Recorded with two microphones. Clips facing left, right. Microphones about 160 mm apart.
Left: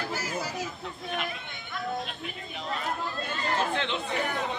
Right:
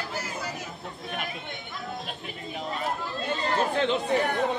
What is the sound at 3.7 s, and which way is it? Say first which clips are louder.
Speech: right 6 dB; 40° right (ahead or behind).